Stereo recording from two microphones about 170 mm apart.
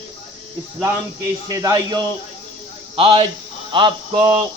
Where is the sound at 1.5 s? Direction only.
20° right (ahead or behind).